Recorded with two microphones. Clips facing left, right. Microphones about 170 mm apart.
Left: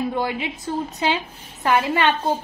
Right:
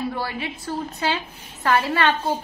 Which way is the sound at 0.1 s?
20° left (ahead or behind).